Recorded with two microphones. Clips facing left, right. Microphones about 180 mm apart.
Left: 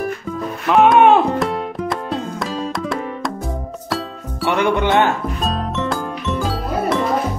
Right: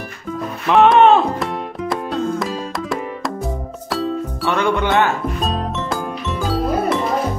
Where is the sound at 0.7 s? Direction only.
5° left (ahead or behind).